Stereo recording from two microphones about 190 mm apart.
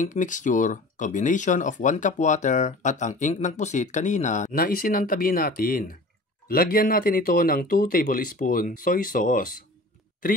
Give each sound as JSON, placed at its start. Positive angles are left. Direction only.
{"t": 0.0, "sound": "speech", "side_deg": 40}